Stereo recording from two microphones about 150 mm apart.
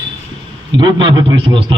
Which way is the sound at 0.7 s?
30° right (ahead or behind).